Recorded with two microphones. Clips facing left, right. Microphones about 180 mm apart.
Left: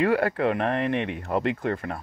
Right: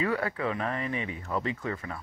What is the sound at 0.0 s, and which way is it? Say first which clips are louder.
Speech: left 7 dB; 70° left (ahead or behind).